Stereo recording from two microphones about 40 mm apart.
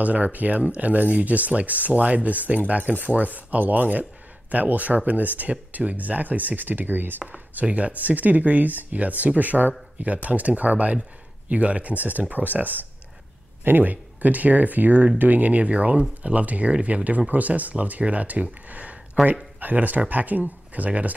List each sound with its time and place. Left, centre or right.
0.0 s speech: right
7.6 s speech: right
19.2 s speech: centre
19.6 s speech: right